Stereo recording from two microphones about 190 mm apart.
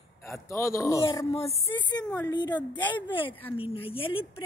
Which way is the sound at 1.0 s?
30° left (ahead or behind).